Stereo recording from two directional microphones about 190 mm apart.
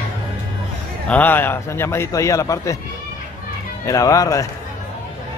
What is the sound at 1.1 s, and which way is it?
Speech, 10° left (ahead or behind).